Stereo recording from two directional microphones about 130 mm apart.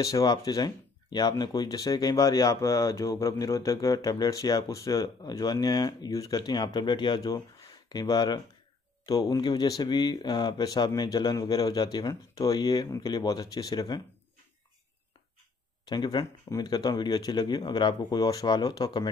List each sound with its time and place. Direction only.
0.0 s speech: 25° left (ahead or behind)
15.9 s speech: 35° left (ahead or behind)